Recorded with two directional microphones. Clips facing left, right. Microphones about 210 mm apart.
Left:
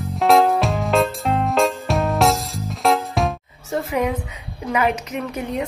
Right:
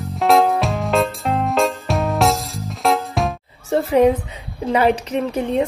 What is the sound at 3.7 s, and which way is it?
A woman's voice, 30° right (ahead or behind).